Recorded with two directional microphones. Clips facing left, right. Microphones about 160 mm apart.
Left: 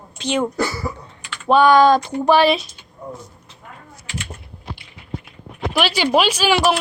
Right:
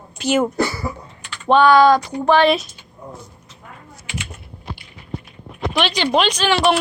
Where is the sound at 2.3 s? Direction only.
Centre (ahead or behind).